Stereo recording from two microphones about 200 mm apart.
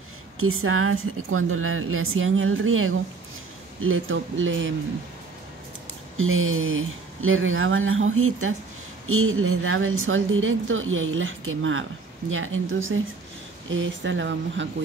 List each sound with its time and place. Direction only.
0.4 s a woman's voice: 90° right; by 4.7 s 75° right (ahead or behind)
6.1 s a woman's voice: 90° right; by 14.7 s 65° right (ahead or behind)